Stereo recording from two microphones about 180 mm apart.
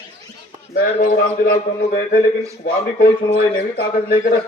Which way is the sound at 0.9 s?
55° left (ahead or behind).